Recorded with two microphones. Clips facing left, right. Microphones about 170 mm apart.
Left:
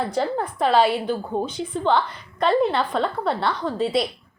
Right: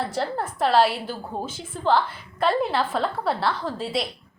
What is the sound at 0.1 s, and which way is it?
A woman's voice, centre (ahead or behind).